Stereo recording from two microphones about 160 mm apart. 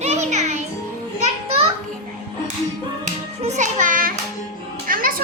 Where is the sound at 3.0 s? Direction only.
45° right (ahead or behind).